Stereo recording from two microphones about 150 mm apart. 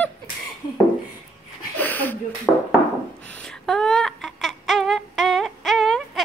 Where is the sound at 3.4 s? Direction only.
5° left (ahead or behind).